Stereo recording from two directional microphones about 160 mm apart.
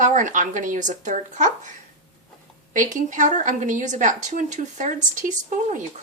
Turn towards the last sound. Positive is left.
turn(degrees=-50)  # may be behind; listen again after turning